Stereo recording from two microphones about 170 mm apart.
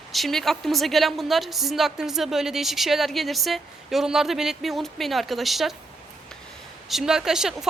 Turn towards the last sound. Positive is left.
turn(degrees=-5)  # may be behind; listen again after turning